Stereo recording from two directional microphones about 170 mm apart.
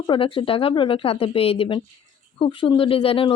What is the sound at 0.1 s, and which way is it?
Speech, 30° left (ahead or behind).